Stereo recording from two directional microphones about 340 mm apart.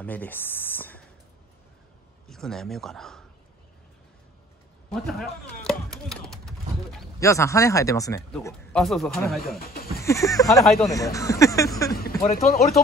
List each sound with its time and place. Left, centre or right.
0.0 s speech: centre
2.2 s a man's voice: centre
4.8 s speech: centre
9.6 s goat: left
10.0 s speech: centre
11.9 s speech: left